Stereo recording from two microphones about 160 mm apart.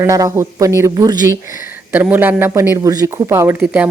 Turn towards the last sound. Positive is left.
turn(degrees=-10)  # may be behind; listen again after turning